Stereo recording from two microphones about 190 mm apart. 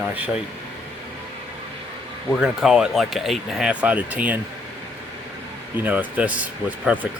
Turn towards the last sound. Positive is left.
turn(degrees=-5)  # may be behind; listen again after turning